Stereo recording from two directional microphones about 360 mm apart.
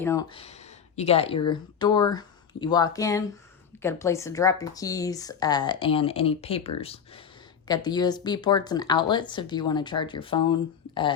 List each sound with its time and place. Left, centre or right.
0.0 s speech: centre